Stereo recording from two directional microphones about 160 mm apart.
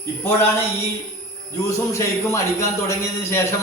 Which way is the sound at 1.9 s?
20° left (ahead or behind).